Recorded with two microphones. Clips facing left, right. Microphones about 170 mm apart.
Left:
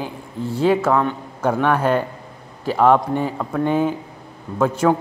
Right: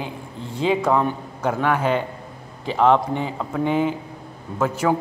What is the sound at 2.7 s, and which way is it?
Speech, 10° left (ahead or behind).